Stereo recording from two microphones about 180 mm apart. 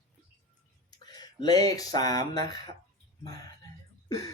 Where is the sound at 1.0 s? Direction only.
20° left (ahead or behind).